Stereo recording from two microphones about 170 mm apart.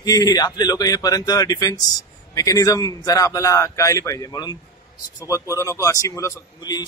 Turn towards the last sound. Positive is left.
turn(degrees=25)  # may be behind; listen again after turning